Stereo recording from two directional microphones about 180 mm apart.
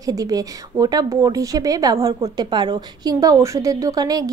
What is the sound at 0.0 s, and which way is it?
Speech, 20° right (ahead or behind).